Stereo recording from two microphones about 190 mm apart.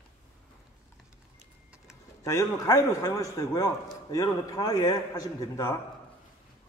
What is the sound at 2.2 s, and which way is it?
A man's voice, 20° left (ahead or behind).